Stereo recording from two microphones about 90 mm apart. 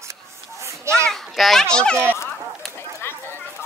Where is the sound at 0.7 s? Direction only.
30° right (ahead or behind).